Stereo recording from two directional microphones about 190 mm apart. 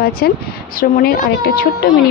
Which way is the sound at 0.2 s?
55° left (ahead or behind).